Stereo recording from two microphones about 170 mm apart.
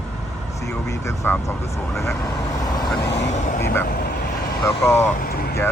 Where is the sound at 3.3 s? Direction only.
45° left (ahead or behind).